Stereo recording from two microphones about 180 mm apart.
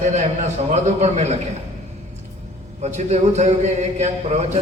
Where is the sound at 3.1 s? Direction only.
40° right (ahead or behind).